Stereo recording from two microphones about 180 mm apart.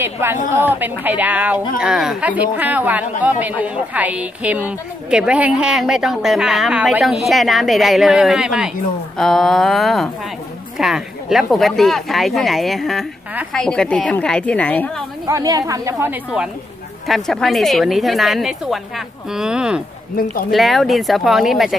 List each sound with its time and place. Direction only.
0.0 s a woman's voice: 15° right (ahead or behind); by 15.0 s 10° left (ahead or behind)
15.2 s a woman's voice: 20° right (ahead or behind); by 21.7 s centre (ahead or behind)